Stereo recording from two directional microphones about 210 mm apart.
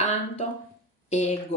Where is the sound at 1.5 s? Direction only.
35° left (ahead or behind).